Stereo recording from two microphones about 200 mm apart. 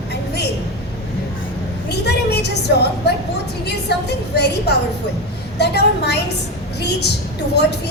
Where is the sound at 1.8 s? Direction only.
55° left (ahead or behind).